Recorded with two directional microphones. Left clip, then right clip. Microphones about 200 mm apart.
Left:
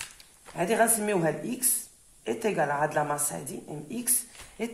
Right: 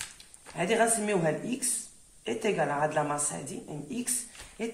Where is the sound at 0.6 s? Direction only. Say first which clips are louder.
Left 1 dB; 25° left (ahead or behind).